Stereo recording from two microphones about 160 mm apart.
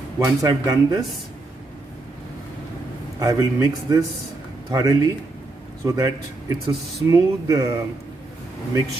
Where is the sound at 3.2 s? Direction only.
20° right (ahead or behind).